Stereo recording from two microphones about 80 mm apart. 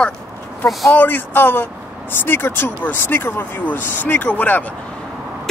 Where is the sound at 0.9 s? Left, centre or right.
Left.